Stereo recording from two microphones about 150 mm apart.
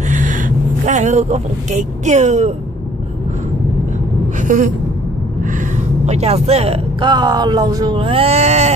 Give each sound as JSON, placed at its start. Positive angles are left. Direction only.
{"t": 0.1, "sound": "speech", "side_deg": -60}
{"t": 4.4, "sound": "a sound", "side_deg": -55}
{"t": 5.4, "sound": "a woman's voice", "side_deg": -60}